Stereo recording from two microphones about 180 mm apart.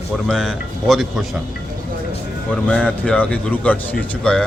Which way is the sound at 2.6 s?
5° left (ahead or behind).